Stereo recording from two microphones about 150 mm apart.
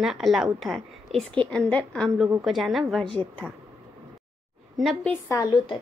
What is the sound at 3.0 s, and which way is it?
Speech, 35° right (ahead or behind).